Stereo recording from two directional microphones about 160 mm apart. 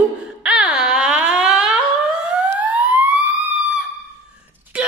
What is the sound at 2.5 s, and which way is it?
Emergency vehicle, 10° right (ahead or behind).